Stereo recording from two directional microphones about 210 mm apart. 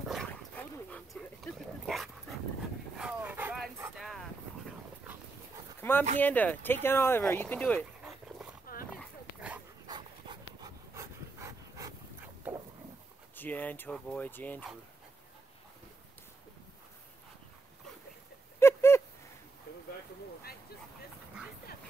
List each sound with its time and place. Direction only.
0.1 s dog: 5° left (ahead or behind)
3.9 s wind noise: centre (ahead or behind)
5.8 s a sound: 10° left (ahead or behind)
6.1 s speech: 10° left (ahead or behind)
8.0 s dog: 5° right (ahead or behind)
9.8 s dog: 20° right (ahead or behind)
13.4 s speech: 10° left (ahead or behind)
18.6 s a sound: 10° left (ahead or behind)